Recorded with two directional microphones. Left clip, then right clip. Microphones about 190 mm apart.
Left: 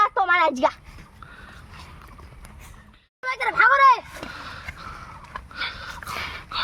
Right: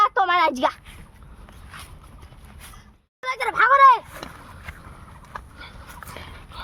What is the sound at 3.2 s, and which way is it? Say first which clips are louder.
Speech: even; 35° right (ahead or behind).